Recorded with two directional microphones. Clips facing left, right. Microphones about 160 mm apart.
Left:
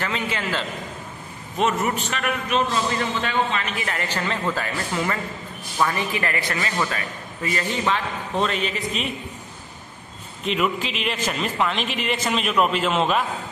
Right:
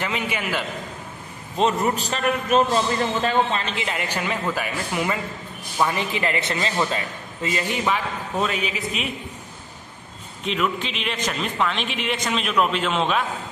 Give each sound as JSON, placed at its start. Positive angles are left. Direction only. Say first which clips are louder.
{"t": 0.0, "sound": "a man's voice", "louder": "even", "side_deg": -15}
{"t": 1.6, "sound": "a man's voice", "louder": "right 1 dB", "side_deg": -35}
{"t": 3.7, "sound": "a man's voice", "louder": "even", "side_deg": -20}
{"t": 7.8, "sound": "a man's voice", "louder": "even", "side_deg": -5}
{"t": 10.4, "sound": "a man's voice", "louder": "left 1 dB", "side_deg": 0}